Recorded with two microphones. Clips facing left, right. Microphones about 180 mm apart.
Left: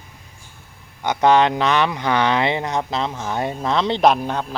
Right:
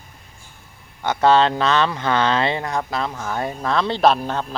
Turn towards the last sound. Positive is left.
turn(degrees=15)  # may be behind; listen again after turning